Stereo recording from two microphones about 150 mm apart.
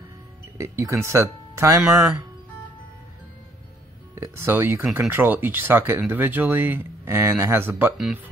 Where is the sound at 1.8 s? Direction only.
5° right (ahead or behind).